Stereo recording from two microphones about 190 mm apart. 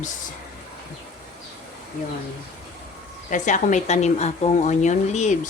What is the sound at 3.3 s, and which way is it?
Speech, 40° left (ahead or behind).